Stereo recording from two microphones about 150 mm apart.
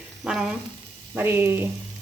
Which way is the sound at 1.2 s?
15° right (ahead or behind).